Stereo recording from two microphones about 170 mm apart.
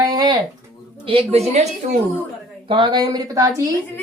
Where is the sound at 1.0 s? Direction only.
35° right (ahead or behind).